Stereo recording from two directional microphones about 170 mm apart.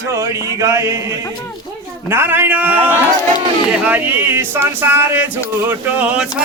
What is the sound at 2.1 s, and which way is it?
Speech, 15° right (ahead or behind).